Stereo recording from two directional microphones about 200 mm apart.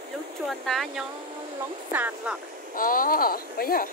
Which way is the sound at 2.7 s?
45° left (ahead or behind).